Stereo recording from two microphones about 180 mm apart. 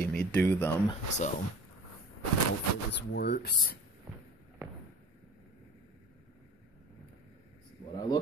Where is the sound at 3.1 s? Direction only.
65° left (ahead or behind).